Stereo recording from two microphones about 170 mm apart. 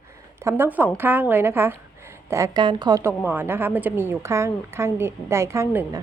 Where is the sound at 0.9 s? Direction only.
10° right (ahead or behind).